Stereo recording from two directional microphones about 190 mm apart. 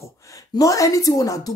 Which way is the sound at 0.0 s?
15° left (ahead or behind).